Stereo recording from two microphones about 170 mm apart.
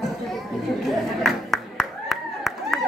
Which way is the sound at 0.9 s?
Centre (ahead or behind).